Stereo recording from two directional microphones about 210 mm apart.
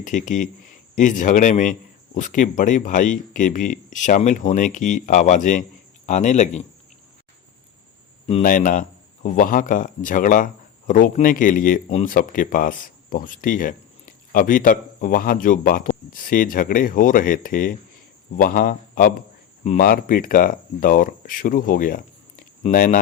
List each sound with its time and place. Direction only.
0.0 s a man's voice: 35° left (ahead or behind)
8.3 s a man's voice: 35° left (ahead or behind)